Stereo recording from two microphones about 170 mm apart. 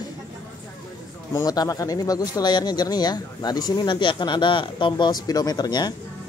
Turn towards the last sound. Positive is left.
turn(degrees=25)  # may be behind; listen again after turning